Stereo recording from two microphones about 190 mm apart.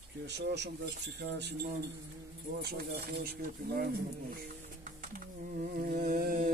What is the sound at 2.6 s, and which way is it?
Speech, 55° right (ahead or behind).